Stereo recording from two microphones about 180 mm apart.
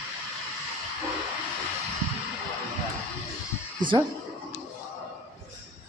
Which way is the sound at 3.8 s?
25° right (ahead or behind).